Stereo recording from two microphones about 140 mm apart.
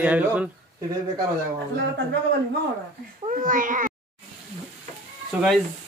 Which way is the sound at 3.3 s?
75° right (ahead or behind).